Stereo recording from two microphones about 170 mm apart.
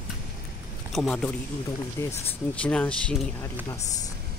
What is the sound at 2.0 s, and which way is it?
Speech, 15° left (ahead or behind).